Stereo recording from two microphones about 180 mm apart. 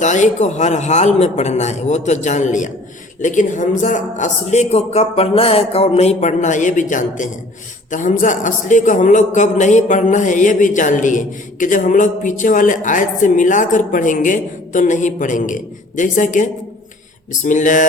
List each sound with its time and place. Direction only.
0.0 s a man's voice: 40° left (ahead or behind)